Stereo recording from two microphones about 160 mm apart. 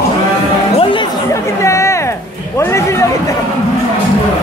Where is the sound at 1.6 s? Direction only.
15° left (ahead or behind).